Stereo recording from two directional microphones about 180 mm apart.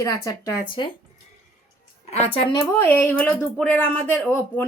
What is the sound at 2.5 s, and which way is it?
Speech, 10° left (ahead or behind).